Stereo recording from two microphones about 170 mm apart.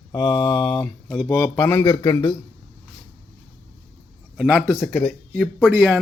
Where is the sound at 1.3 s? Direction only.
15° left (ahead or behind).